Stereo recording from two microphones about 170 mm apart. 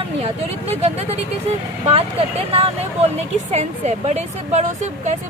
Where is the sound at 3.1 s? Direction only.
40° right (ahead or behind).